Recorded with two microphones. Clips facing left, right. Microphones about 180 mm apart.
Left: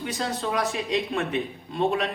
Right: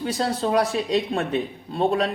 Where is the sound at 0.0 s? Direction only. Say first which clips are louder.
Right 5 dB; 35° right (ahead or behind).